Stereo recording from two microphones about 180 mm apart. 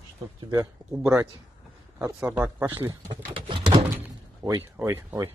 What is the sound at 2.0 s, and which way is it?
Speech, 10° right (ahead or behind).